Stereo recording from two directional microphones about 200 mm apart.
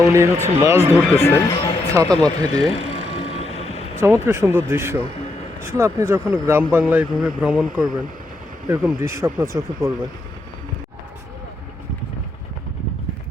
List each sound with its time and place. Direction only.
0.0 s speech: 15° right (ahead or behind)
1.2 s speech: 10° left (ahead or behind)
2.0 s speech: 20° right (ahead or behind)
2.5 s vehicle: 30° left (ahead or behind)
4.0 s speech: 15° right (ahead or behind)